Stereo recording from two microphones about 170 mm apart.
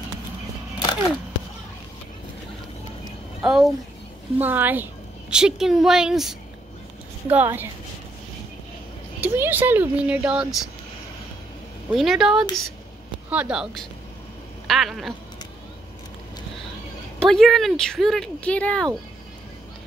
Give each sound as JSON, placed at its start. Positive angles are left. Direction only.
{"t": 0.7, "sound": "a sound", "side_deg": 25}
{"t": 3.4, "sound": "speech", "side_deg": 0}
{"t": 9.2, "sound": "speech", "side_deg": -10}
{"t": 11.9, "sound": "speech", "side_deg": 0}
{"t": 17.2, "sound": "speech", "side_deg": 0}